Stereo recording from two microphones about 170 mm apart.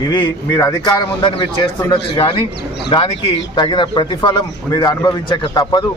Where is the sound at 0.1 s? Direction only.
25° left (ahead or behind).